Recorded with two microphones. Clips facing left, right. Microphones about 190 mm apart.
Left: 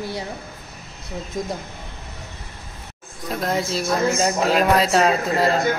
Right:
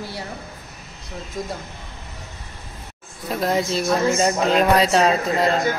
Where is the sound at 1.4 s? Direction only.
20° left (ahead or behind).